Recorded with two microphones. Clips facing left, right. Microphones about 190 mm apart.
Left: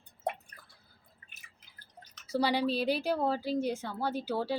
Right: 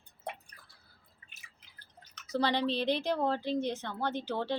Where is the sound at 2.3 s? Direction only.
10° left (ahead or behind).